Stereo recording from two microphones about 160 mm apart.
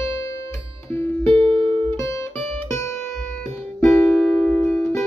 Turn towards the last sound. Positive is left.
turn(degrees=0)  # may be behind; listen again after turning